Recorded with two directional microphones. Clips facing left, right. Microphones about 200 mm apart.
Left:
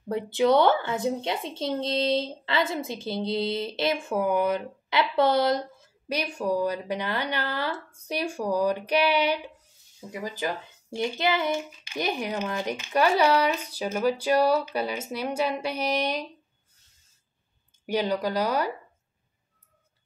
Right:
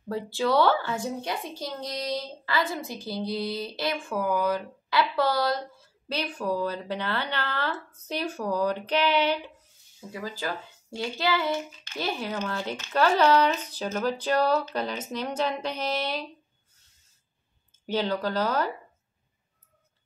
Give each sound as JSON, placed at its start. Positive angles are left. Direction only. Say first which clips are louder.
{"t": 0.1, "sound": "a child's voice", "louder": "left 4 dB", "side_deg": 20}
{"t": 17.8, "sound": "a child's voice", "louder": "left 1 dB", "side_deg": 10}